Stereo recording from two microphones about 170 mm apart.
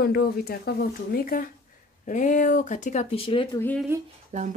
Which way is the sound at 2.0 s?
45° left (ahead or behind).